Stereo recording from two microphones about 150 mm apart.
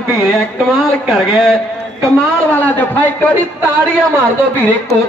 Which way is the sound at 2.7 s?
10° left (ahead or behind).